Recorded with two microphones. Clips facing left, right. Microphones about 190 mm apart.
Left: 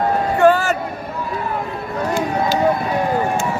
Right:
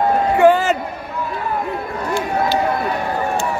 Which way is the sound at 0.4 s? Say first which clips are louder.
Right 1 dB; 15° right (ahead or behind).